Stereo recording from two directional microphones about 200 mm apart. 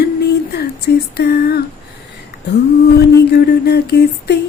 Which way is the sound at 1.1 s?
50° left (ahead or behind).